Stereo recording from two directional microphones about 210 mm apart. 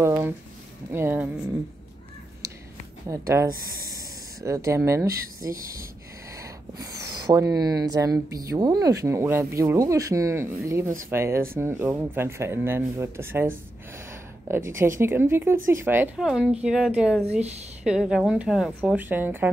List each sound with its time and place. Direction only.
0.0 s speech: 10° right (ahead or behind)
2.4 s a sound: 15° right (ahead or behind)
3.1 s speech: 15° right (ahead or behind)
5.5 s speech: 45° right (ahead or behind)
6.3 s speech: 15° right (ahead or behind)
17.3 s speech: 30° right (ahead or behind)
17.8 s speech: 5° right (ahead or behind)